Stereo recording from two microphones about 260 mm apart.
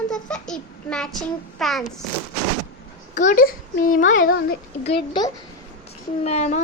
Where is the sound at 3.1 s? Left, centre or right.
Left.